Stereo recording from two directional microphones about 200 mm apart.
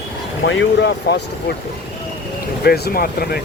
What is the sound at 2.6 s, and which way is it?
Speech, 50° left (ahead or behind).